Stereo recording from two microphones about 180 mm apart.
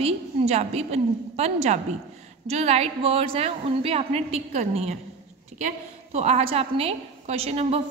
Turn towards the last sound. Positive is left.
turn(degrees=-35)  # may be behind; listen again after turning